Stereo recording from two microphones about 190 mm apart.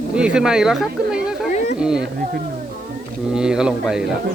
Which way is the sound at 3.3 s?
5° right (ahead or behind).